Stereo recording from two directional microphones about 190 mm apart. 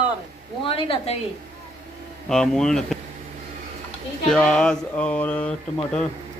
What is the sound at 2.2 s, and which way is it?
Speech, centre (ahead or behind).